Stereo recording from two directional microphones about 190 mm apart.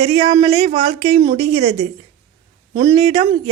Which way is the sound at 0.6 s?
35° right (ahead or behind).